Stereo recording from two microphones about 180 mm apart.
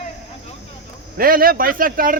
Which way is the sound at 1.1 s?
55° right (ahead or behind).